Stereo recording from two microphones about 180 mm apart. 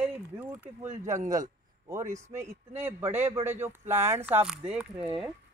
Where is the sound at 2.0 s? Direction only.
40° right (ahead or behind).